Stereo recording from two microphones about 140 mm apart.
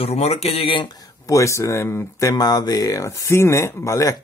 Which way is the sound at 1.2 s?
20° left (ahead or behind).